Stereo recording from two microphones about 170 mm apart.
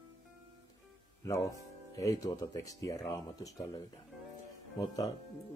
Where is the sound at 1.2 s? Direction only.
20° left (ahead or behind).